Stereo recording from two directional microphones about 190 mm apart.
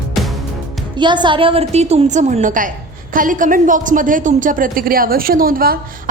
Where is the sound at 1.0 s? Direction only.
25° right (ahead or behind).